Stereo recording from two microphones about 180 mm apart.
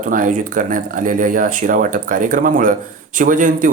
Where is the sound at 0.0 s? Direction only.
50° right (ahead or behind).